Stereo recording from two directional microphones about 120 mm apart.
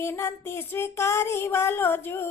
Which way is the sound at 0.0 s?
20° left (ahead or behind).